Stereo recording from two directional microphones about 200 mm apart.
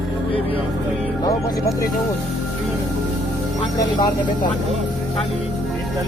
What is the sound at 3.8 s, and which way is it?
Speech, 20° left (ahead or behind).